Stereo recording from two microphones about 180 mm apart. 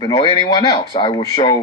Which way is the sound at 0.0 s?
25° left (ahead or behind).